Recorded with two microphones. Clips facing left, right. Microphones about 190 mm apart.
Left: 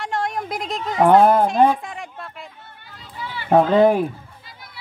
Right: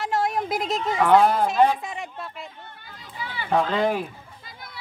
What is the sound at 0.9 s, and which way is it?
Speech, 50° left (ahead or behind).